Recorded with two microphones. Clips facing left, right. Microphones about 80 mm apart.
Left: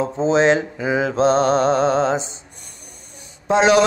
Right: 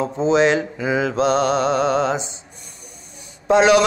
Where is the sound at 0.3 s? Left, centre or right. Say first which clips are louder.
Even; left.